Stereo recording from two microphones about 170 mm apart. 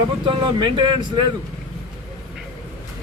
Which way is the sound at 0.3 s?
30° right (ahead or behind).